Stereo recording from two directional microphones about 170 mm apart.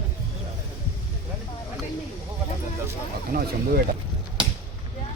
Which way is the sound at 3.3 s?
60° right (ahead or behind).